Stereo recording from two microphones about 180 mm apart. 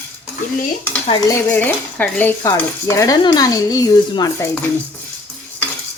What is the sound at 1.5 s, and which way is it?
Cutlery, 10° left (ahead or behind).